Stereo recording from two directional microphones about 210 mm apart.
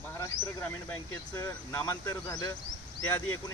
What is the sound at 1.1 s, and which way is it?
Speech, 15° left (ahead or behind).